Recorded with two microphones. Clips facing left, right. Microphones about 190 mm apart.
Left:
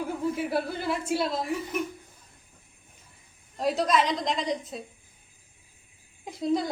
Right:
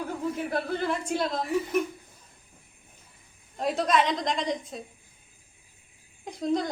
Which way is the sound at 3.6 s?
Centre (ahead or behind).